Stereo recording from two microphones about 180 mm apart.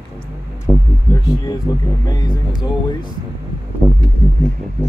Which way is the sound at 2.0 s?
20° left (ahead or behind).